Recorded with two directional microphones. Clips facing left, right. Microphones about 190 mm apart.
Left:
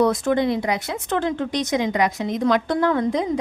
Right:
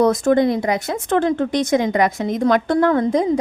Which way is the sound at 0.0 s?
45° right (ahead or behind).